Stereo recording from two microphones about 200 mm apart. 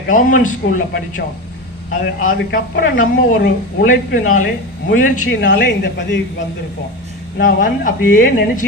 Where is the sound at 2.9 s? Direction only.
70° left (ahead or behind).